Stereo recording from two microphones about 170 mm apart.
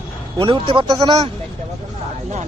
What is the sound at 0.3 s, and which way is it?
Speech, 30° right (ahead or behind).